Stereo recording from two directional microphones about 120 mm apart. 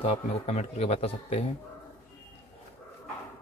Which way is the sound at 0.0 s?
65° left (ahead or behind).